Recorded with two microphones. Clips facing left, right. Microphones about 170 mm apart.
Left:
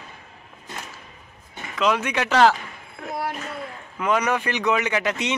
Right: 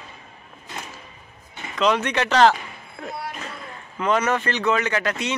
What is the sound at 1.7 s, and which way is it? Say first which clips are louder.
Speech: right 1 dB; 5° left (ahead or behind).